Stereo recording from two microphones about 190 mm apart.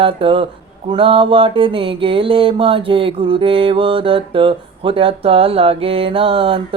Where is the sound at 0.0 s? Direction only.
25° right (ahead or behind).